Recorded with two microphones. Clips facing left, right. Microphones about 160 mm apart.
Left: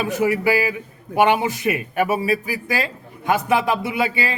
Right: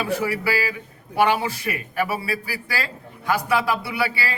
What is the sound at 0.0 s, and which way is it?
A man's voice, 20° left (ahead or behind).